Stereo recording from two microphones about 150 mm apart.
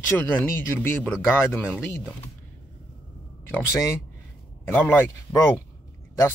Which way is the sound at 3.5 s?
15° left (ahead or behind).